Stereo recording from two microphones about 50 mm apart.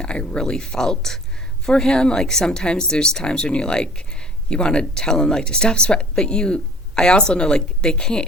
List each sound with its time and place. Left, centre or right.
0.0 s speech: centre